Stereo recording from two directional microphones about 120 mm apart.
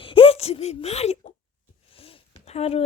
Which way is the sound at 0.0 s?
50° left (ahead or behind).